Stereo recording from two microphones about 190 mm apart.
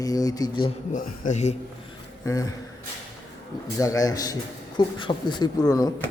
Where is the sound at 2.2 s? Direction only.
15° left (ahead or behind).